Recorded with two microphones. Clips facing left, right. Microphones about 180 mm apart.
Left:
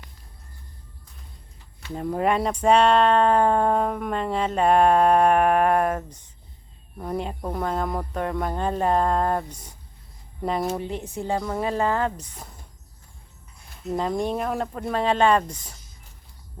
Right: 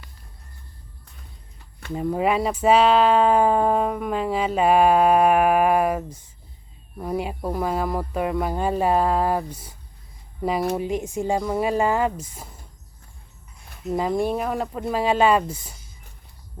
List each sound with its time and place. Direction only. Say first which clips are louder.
1.9 s speech: right 1 dB; 5° right (ahead or behind)
13.8 s speech: right 2 dB; 5° right (ahead or behind)